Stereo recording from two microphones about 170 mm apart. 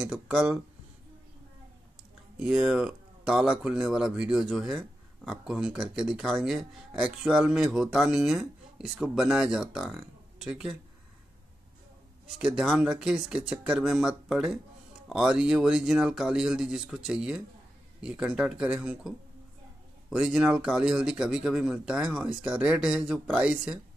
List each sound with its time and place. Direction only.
0.0 s speech: 5° right (ahead or behind)
2.4 s speech: 5° right (ahead or behind)
12.4 s speech: 5° right (ahead or behind)